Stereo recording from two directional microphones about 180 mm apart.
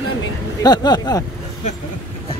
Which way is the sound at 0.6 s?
25° left (ahead or behind).